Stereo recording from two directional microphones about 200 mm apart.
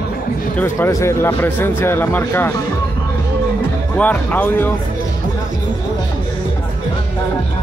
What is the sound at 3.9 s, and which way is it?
Speech, 10° left (ahead or behind).